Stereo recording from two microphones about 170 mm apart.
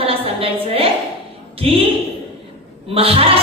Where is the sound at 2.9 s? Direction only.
35° right (ahead or behind).